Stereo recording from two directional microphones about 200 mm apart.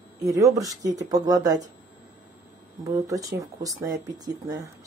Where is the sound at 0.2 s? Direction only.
15° right (ahead or behind).